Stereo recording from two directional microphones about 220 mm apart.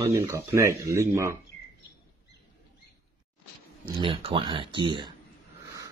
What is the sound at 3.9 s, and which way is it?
Speech, 25° right (ahead or behind).